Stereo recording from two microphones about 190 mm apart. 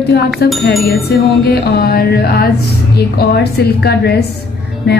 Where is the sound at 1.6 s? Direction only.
50° left (ahead or behind).